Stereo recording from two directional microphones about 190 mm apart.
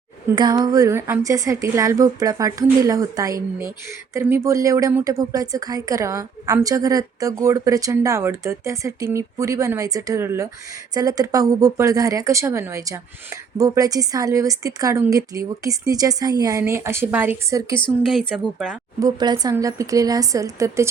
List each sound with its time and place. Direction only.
0.3 s speech: 20° right (ahead or behind)
18.1 s speech: centre (ahead or behind)
18.9 s speech: 20° right (ahead or behind)